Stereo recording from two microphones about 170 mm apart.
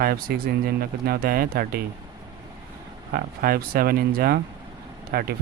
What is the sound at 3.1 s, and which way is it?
Speech, 60° right (ahead or behind).